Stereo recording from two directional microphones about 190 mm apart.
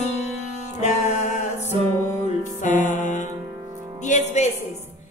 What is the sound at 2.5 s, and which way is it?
Music, 40° left (ahead or behind).